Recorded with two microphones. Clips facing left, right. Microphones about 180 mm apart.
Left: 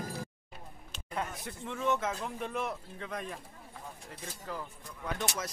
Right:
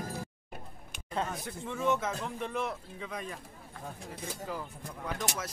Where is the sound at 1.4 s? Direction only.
Centre (ahead or behind).